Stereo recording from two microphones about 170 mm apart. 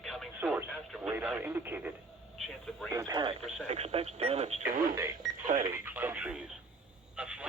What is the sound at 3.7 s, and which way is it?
Speech, 40° right (ahead or behind).